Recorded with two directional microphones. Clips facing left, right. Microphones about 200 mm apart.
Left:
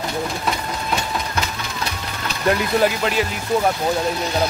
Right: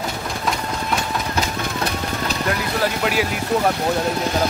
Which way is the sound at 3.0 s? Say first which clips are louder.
Even; 5° right (ahead or behind).